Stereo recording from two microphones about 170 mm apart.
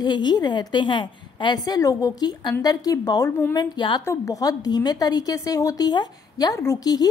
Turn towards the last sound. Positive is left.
turn(degrees=20)  # may be behind; listen again after turning